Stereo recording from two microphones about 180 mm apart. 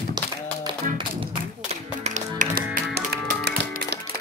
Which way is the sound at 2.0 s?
45° right (ahead or behind).